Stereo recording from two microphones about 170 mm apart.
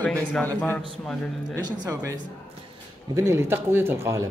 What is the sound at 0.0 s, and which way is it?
Speech, 10° left (ahead or behind).